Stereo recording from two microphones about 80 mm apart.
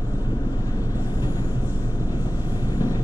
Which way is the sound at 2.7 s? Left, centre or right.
Left.